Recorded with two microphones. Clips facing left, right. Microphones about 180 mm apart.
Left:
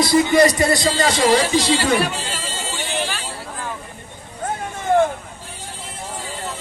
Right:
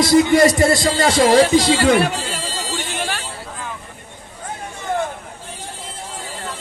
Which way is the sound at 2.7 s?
60° right (ahead or behind).